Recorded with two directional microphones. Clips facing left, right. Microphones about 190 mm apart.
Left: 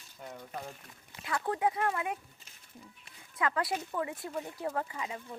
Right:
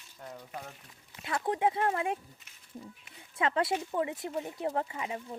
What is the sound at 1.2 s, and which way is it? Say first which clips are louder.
Speech: right 2 dB; 20° right (ahead or behind).